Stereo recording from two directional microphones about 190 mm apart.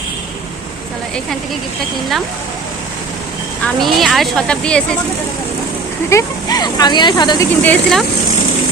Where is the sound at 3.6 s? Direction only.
Centre (ahead or behind).